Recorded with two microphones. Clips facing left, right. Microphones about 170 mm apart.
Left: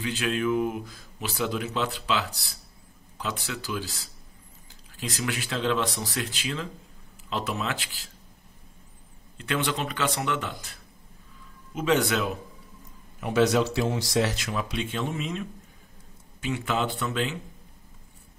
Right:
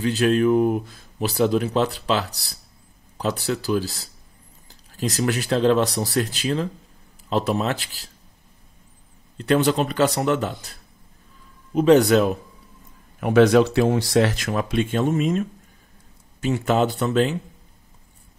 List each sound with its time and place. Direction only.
0.0 s speech: 40° right (ahead or behind)
9.4 s speech: 40° right (ahead or behind)
13.2 s speech: 55° right (ahead or behind); by 17.4 s 40° right (ahead or behind)